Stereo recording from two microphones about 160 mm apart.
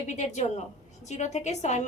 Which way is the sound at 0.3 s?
45° left (ahead or behind).